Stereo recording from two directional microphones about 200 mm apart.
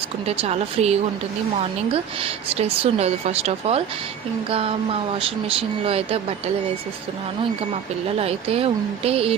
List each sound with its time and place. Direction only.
0.3 s a woman's voice: 30° right (ahead or behind)
8.2 s speech: 30° right (ahead or behind)